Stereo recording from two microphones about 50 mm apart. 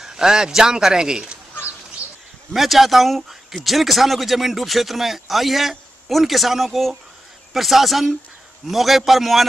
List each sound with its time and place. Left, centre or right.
0.0 s a man's voice: centre
2.0 s a sound: right
2.5 s speech: centre